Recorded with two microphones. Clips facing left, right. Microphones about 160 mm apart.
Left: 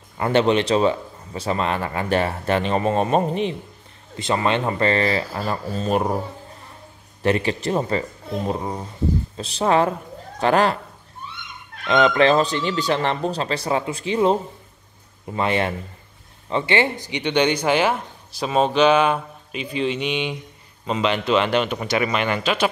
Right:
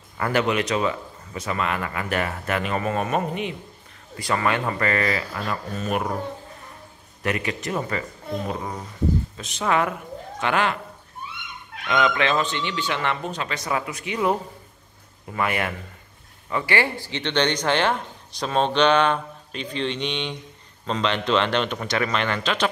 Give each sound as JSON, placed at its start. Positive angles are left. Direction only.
{"t": 0.2, "sound": "speech", "side_deg": 30}
{"t": 7.2, "sound": "speech", "side_deg": 30}
{"t": 11.9, "sound": "speech", "side_deg": 35}